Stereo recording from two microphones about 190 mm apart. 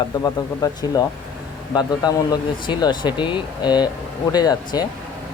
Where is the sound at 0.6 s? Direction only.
20° left (ahead or behind).